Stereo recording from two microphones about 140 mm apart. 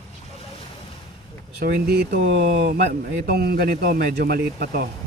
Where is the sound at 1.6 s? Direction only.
90° right.